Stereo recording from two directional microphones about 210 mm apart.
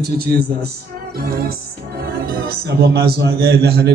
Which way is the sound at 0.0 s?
50° right (ahead or behind).